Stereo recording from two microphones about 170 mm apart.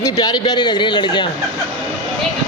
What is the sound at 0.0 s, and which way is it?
Speech, 20° left (ahead or behind).